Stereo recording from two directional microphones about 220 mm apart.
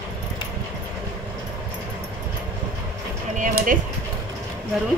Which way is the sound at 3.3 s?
35° right (ahead or behind).